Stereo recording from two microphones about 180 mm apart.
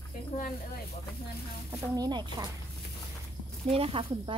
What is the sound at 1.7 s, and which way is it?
Speech, 20° right (ahead or behind).